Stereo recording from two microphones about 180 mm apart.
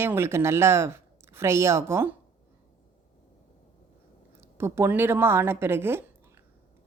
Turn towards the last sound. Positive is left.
turn(degrees=-15)  # may be behind; listen again after turning